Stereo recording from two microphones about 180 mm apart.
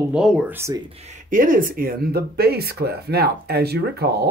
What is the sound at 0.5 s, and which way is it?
Speech, 15° right (ahead or behind).